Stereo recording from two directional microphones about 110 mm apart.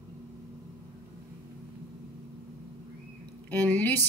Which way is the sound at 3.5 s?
15° left (ahead or behind).